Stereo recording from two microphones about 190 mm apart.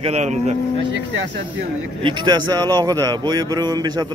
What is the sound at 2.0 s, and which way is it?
A man's voice, 25° right (ahead or behind).